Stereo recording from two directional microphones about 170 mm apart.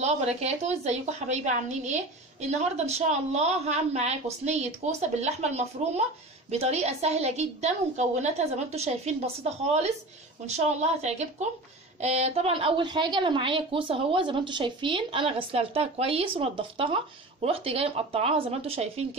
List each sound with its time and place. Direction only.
0.0 s a woman's voice: 40° right (ahead or behind)